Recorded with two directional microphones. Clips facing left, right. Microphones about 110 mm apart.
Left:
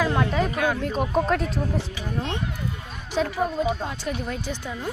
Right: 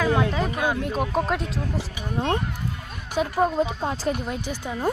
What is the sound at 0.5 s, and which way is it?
Speech, 20° right (ahead or behind).